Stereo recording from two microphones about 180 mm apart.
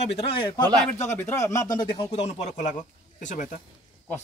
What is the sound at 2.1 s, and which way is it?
Speech, 40° left (ahead or behind).